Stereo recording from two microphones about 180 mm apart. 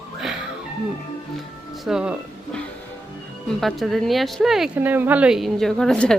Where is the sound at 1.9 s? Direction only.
5° right (ahead or behind).